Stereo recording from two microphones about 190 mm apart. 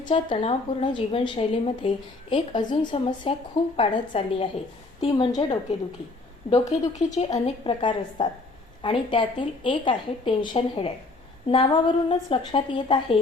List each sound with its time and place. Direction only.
0.0 s speech: 25° left (ahead or behind)
7.4 s speech: 25° left (ahead or behind)